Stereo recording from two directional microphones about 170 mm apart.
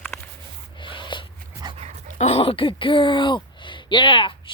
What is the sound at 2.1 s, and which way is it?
Speech, 40° left (ahead or behind).